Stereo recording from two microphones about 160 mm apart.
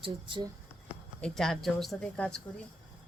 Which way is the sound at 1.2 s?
5° left (ahead or behind).